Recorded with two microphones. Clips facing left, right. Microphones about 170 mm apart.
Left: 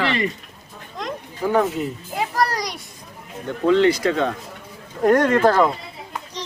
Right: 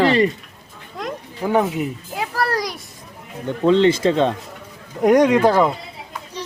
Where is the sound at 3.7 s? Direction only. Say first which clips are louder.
Right 2 dB; 25° right (ahead or behind).